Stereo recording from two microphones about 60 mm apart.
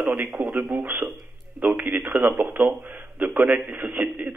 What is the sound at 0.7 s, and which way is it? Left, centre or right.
Speech, right.